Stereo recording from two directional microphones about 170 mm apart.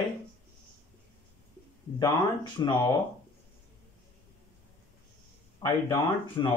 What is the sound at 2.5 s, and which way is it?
Speech, 25° left (ahead or behind).